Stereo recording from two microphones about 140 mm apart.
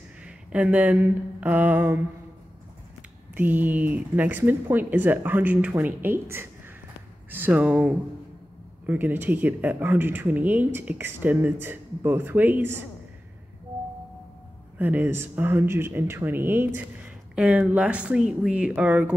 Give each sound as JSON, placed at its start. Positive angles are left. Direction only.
{"t": 0.2, "sound": "a sound", "side_deg": -10}
{"t": 3.0, "sound": "speech", "side_deg": -10}
{"t": 14.8, "sound": "speech", "side_deg": -15}